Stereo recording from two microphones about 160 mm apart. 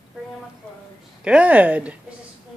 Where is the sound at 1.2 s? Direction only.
10° right (ahead or behind).